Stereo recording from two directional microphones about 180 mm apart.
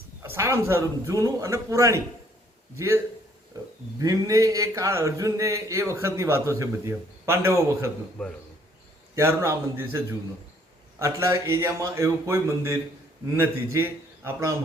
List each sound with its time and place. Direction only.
0.2 s speech: 15° right (ahead or behind)
8.2 s a man's voice: 5° left (ahead or behind)
9.1 s speech: 15° right (ahead or behind)
11.0 s speech: 15° right (ahead or behind)